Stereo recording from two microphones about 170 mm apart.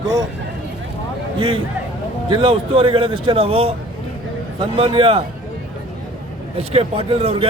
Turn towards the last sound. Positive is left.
turn(degrees=-35)  # may be behind; listen again after turning